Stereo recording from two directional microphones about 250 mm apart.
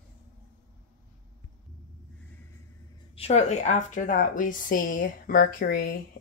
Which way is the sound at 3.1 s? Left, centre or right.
Left.